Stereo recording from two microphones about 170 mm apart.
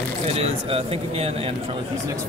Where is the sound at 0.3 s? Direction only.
35° right (ahead or behind).